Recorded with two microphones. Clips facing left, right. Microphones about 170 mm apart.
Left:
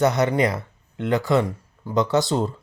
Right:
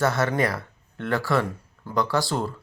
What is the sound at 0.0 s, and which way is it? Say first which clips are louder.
Speech: left 4 dB; 20° left (ahead or behind).